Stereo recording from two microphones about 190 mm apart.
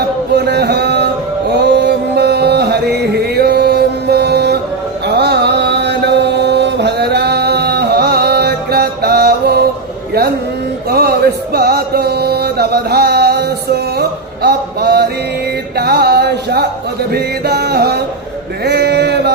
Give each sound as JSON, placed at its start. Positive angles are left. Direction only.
{"t": 0.3, "sound": "chant", "side_deg": -60}
{"t": 5.0, "sound": "mantra", "side_deg": -60}
{"t": 10.8, "sound": "music", "side_deg": -55}
{"t": 18.6, "sound": "a sound", "side_deg": -60}